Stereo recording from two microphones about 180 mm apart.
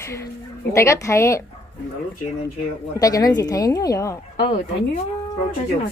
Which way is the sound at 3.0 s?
20° left (ahead or behind).